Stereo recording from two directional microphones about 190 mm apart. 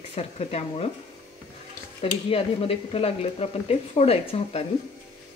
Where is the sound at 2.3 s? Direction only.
30° left (ahead or behind).